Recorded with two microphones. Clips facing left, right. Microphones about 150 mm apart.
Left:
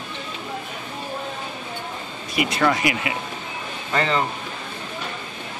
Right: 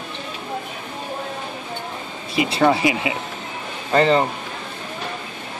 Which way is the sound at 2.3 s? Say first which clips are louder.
Right 3 dB; 25° right (ahead or behind).